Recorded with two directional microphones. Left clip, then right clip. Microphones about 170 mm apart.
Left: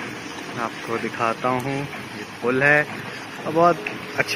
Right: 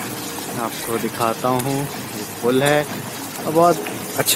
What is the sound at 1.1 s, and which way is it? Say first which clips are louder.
Speech: right 2 dB; 5° right (ahead or behind).